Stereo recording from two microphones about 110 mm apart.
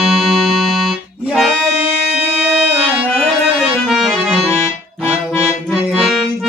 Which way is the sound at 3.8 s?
Centre (ahead or behind).